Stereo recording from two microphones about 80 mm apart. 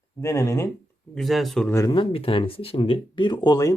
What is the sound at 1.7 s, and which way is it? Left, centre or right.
Speech, left.